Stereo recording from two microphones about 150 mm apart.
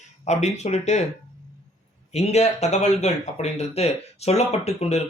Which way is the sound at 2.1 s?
45° left (ahead or behind).